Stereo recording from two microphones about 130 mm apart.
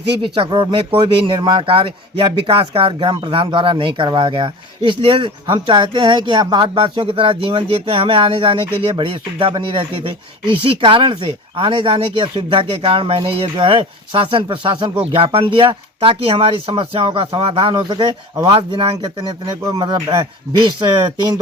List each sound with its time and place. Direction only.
0.2 s speech: 40° right (ahead or behind)